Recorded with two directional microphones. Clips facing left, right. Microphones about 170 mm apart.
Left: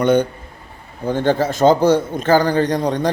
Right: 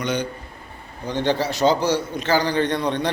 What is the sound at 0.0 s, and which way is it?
A man's voice, 55° left (ahead or behind).